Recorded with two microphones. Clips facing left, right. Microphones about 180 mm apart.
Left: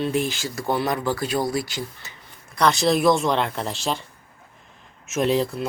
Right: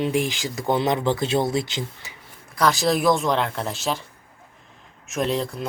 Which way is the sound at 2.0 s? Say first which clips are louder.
Right 1 dB; 10° right (ahead or behind).